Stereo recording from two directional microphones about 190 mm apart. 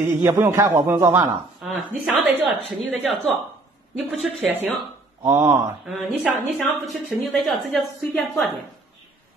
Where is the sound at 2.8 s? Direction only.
Centre (ahead or behind).